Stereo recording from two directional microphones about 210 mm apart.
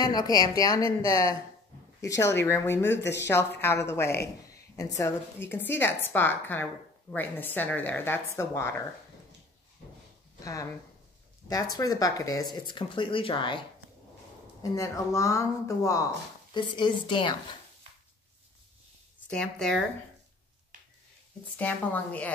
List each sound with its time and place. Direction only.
0.0 s a woman's voice: 20° left (ahead or behind)
2.8 s speech: 55° left (ahead or behind)
3.9 s a woman's voice: 10° left (ahead or behind)
10.4 s a woman's voice: 15° left (ahead or behind)
19.2 s speech: 5° left (ahead or behind)
21.5 s a woman's voice: 5° left (ahead or behind)